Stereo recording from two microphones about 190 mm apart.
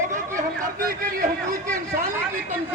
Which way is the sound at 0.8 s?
50° right (ahead or behind).